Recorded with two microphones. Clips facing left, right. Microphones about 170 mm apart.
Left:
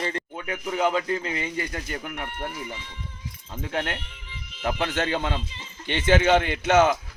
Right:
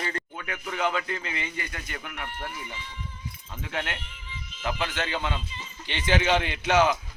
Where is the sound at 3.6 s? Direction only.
35° left (ahead or behind).